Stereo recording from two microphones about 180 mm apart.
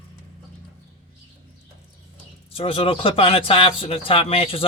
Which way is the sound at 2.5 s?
30° left (ahead or behind).